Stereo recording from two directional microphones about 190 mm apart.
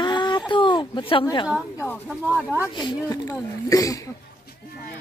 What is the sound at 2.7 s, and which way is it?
Speech, 20° left (ahead or behind).